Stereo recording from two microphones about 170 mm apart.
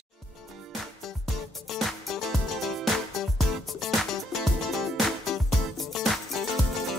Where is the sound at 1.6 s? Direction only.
Centre (ahead or behind).